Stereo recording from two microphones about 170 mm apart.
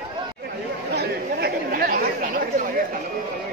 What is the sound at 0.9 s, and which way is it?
Chatter, 65° right (ahead or behind).